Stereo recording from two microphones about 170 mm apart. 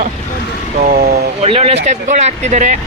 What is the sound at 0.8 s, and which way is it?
Speech, 60° right (ahead or behind).